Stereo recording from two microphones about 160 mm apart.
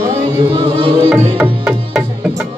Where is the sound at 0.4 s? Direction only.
35° right (ahead or behind).